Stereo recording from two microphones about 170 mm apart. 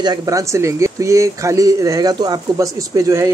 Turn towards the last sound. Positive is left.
turn(degrees=-20)  # may be behind; listen again after turning